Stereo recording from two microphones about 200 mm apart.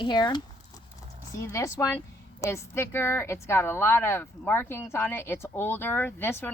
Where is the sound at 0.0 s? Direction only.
20° left (ahead or behind).